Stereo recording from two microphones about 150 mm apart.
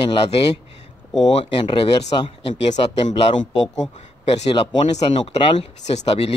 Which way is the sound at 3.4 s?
50° left (ahead or behind).